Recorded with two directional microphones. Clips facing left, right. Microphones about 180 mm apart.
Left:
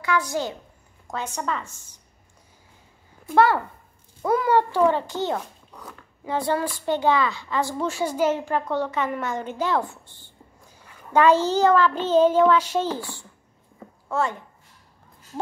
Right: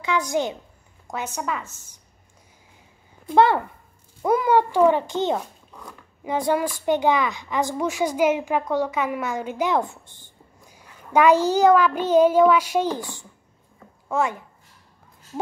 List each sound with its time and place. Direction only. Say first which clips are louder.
0.0 s a woman's voice: right 2 dB; 20° right (ahead or behind)
1.1 s a woman's voice: even; 5° right (ahead or behind)
3.3 s a woman's voice: right 1 dB; 20° right (ahead or behind)
5.7 s speech: even; 5° left (ahead or behind)
6.2 s a woman's voice: right 2 dB; 15° right (ahead or behind)